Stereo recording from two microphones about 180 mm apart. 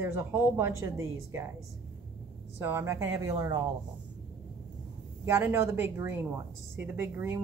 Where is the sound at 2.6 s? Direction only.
15° right (ahead or behind).